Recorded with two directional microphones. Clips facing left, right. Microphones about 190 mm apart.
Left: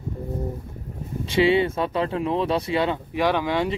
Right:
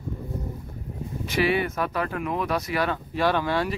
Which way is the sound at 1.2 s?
25° left (ahead or behind).